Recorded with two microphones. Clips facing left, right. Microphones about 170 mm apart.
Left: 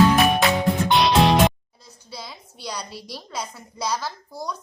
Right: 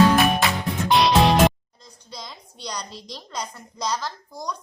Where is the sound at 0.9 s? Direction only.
Centre (ahead or behind).